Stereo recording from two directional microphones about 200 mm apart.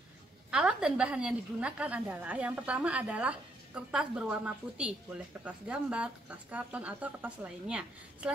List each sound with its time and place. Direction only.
0.5 s a woman's voice: 5° right (ahead or behind)